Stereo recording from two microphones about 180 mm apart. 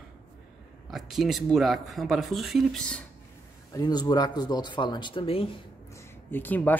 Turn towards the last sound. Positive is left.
turn(degrees=10)  # may be behind; listen again after turning